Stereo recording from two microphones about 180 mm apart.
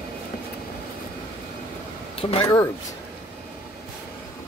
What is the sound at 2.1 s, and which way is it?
Speech, 30° left (ahead or behind).